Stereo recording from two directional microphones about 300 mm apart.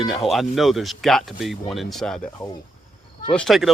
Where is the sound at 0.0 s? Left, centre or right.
Centre.